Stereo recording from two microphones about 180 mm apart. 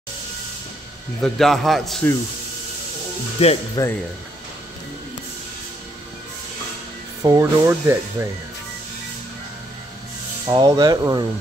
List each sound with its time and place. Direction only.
1.2 s speech: centre (ahead or behind)
3.4 s speech: 35° left (ahead or behind)
3.8 s speech: 20° left (ahead or behind)
7.2 s speech: 15° right (ahead or behind)
10.4 s speech: 20° right (ahead or behind)